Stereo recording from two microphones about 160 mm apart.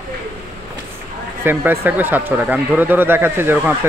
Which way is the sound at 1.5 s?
10° right (ahead or behind).